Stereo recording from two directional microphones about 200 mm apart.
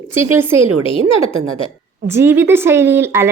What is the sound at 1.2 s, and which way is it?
Speech, 90° right.